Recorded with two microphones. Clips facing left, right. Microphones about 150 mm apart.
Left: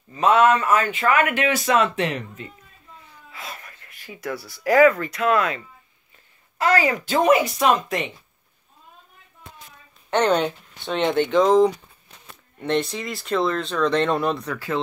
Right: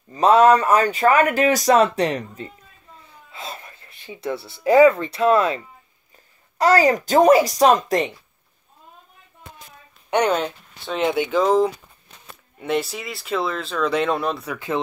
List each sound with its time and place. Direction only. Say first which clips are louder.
0.1 s speech: right 3 dB; 35° right (ahead or behind)
6.6 s speech: right 4 dB; 40° right (ahead or behind)
10.1 s speech: even; 10° right (ahead or behind)
14.5 s speech: right 1 dB; 20° right (ahead or behind)